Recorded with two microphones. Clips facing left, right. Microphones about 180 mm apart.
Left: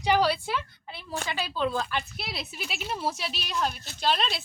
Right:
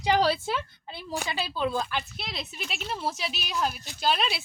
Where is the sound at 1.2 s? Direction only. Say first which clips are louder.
Even; 10° right (ahead or behind).